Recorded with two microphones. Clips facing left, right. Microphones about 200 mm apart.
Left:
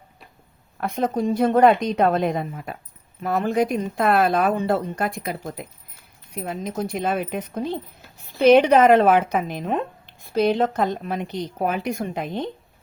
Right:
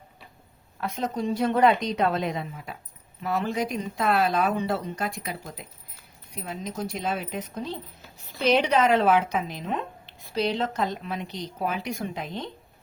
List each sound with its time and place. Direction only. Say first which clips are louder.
0.8 s speech: left 6 dB; 55° left (ahead or behind)